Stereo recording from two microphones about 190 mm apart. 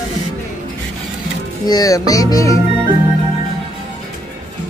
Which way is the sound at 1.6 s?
20° left (ahead or behind).